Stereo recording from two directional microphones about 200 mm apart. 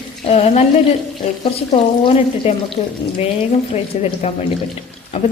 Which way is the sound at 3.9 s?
35° left (ahead or behind).